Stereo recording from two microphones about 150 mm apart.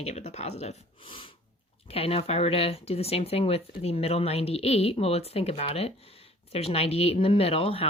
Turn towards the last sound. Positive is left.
turn(degrees=40)  # may be behind; listen again after turning